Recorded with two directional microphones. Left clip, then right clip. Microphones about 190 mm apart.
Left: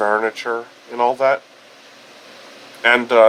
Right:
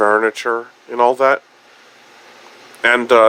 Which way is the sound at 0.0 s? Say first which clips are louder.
Right 4 dB; 30° right (ahead or behind).